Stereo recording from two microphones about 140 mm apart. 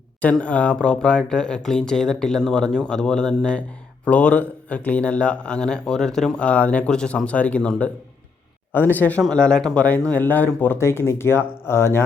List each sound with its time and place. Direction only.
0.2 s speech: 10° left (ahead or behind)